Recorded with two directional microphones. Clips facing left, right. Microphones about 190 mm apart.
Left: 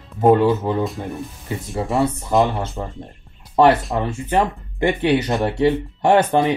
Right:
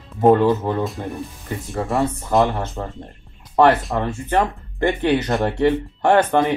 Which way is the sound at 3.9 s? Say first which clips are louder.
Even; 10° left (ahead or behind).